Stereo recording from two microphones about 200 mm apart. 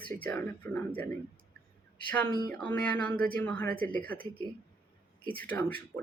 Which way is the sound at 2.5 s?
10° left (ahead or behind).